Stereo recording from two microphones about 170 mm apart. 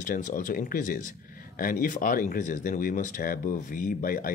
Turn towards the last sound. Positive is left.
turn(degrees=55)  # may be behind; listen again after turning